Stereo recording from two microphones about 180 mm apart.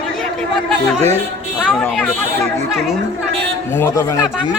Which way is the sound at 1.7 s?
Centre (ahead or behind).